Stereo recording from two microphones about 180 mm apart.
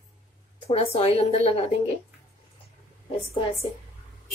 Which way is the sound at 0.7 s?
35° left (ahead or behind).